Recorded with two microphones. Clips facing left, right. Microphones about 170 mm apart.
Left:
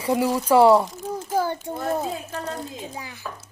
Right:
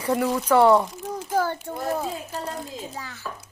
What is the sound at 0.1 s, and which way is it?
Speech, 10° left (ahead or behind).